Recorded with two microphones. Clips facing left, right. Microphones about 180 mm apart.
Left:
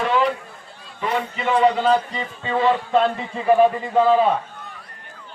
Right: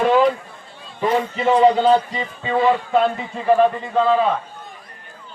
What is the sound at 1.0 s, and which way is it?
Speech, 35° right (ahead or behind).